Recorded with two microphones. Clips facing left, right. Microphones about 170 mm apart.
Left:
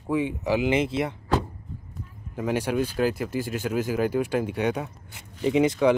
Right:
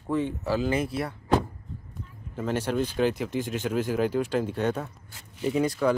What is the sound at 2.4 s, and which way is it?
Speech, 10° left (ahead or behind).